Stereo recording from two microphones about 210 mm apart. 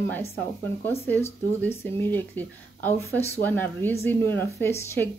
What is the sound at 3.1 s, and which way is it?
Speech, 30° left (ahead or behind).